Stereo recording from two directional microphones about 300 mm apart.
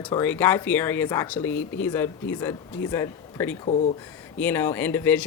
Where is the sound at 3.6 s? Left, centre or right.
Left.